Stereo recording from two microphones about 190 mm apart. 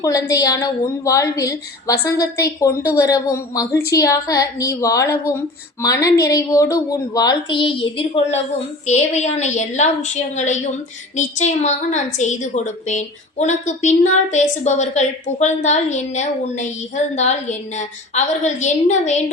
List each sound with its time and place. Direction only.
0.0 s a woman's voice: 15° left (ahead or behind); by 19.2 s 40° left (ahead or behind)